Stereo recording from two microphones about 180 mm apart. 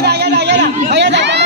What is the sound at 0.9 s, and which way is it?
Chatter, 75° right (ahead or behind).